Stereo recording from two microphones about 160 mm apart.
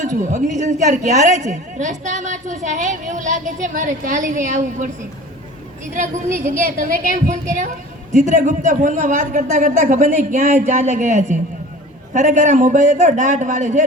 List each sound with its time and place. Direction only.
0.2 s a woman's voice: 50° right (ahead or behind)
8.1 s a woman's voice: 50° right (ahead or behind)